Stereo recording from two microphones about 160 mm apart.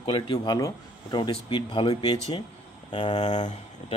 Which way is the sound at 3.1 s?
45° left (ahead or behind).